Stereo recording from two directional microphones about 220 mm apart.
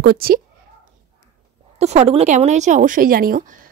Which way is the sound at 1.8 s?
30° right (ahead or behind).